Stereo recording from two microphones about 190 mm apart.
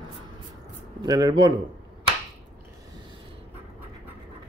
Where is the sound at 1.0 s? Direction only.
20° right (ahead or behind).